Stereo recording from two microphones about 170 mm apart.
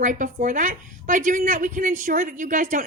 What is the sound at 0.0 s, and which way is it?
A woman's voice, 50° right (ahead or behind).